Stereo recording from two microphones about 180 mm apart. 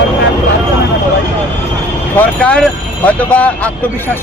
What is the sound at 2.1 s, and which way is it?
Speech, 10° left (ahead or behind).